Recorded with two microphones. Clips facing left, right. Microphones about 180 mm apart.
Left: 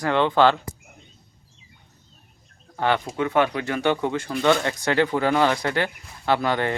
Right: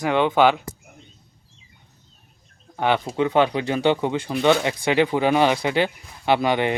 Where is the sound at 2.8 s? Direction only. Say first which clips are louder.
Right 2 dB; 20° right (ahead or behind).